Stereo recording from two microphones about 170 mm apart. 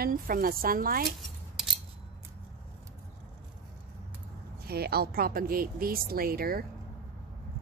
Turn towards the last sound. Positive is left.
turn(degrees=-60)  # may be behind; listen again after turning